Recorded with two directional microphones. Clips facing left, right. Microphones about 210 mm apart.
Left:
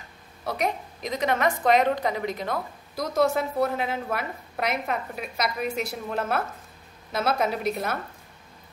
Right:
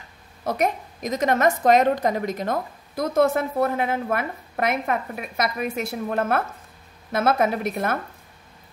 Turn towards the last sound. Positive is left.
turn(degrees=-50)  # may be behind; listen again after turning